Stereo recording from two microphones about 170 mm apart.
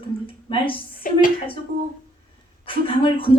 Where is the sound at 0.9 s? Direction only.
55° left (ahead or behind).